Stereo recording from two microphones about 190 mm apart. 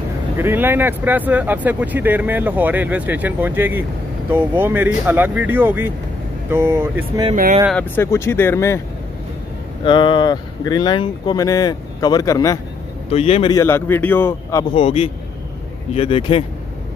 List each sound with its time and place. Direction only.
0.4 s speech: 10° right (ahead or behind)
7.7 s speech: 10° left (ahead or behind)
9.8 s speech: 25° left (ahead or behind)
13.1 s speech: 30° left (ahead or behind); by 14.7 s 15° left (ahead or behind)
14.8 s a man's voice: 30° left (ahead or behind)